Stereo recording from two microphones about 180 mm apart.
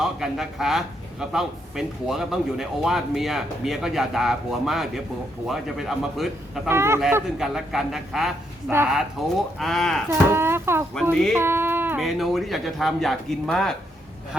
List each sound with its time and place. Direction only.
0.0 s a man's voice: centre (ahead or behind)
6.7 s speech: 15° right (ahead or behind)
7.3 s a man's voice: centre (ahead or behind)
10.1 s speech: 15° right (ahead or behind)
11.1 s a man's voice: centre (ahead or behind)
11.3 s speech: 10° right (ahead or behind)
12.0 s a man's voice: centre (ahead or behind)